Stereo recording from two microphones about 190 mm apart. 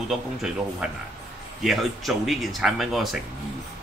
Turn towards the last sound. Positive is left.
turn(degrees=0)  # may be behind; listen again after turning